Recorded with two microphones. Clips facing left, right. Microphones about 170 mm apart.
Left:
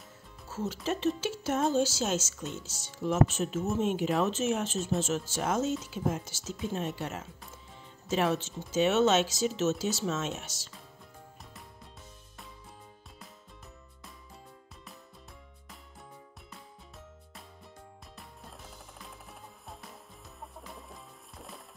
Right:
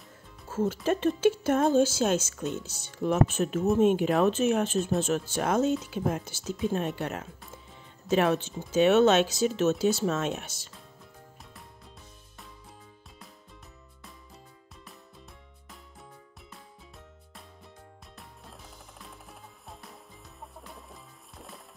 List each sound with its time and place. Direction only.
0.5 s music: 50° right (ahead or behind)
0.8 s speech: 55° right (ahead or behind)
20.6 s music: centre (ahead or behind)